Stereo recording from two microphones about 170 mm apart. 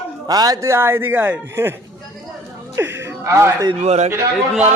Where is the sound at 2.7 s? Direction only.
15° right (ahead or behind).